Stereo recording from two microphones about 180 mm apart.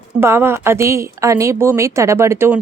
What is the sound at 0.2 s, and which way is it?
Speech, 15° right (ahead or behind).